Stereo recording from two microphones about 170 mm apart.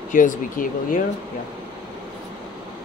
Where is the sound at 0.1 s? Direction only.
50° left (ahead or behind).